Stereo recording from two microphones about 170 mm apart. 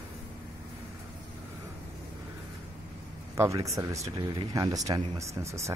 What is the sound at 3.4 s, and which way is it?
Speech, 20° right (ahead or behind).